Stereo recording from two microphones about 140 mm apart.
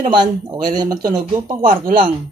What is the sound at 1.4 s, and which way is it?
Speech, 90° right.